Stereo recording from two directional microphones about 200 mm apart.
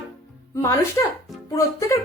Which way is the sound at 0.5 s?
15° left (ahead or behind).